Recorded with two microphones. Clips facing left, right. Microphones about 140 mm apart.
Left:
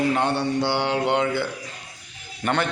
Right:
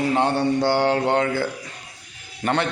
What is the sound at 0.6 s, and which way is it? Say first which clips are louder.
Mantra: right 3 dB; 45° right (ahead or behind).